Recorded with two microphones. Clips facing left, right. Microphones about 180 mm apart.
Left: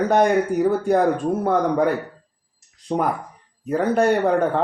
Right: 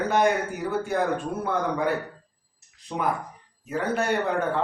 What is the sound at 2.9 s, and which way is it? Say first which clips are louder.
Speech: left 8 dB; 35° left (ahead or behind).